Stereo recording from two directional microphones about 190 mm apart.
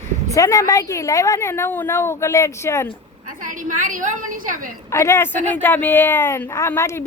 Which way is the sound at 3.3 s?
45° right (ahead or behind).